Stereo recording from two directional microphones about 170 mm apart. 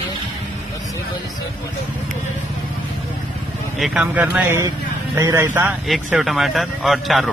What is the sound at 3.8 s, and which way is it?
A man's voice, 5° right (ahead or behind).